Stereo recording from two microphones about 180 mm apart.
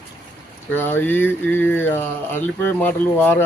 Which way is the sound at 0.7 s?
10° left (ahead or behind).